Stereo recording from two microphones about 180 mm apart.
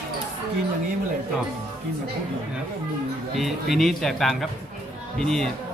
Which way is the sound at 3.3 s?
Centre (ahead or behind).